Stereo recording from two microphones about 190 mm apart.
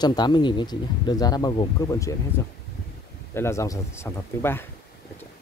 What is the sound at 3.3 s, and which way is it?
Speech, 15° left (ahead or behind).